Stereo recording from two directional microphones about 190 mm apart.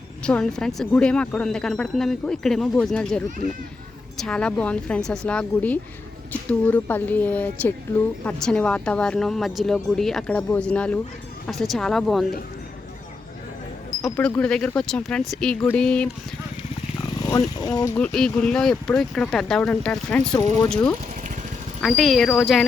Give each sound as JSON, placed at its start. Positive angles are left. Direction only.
{"t": 0.2, "sound": "speech", "side_deg": 5}
{"t": 14.0, "sound": "speech", "side_deg": 5}
{"t": 17.2, "sound": "speech", "side_deg": 20}
{"t": 17.9, "sound": "speech", "side_deg": 5}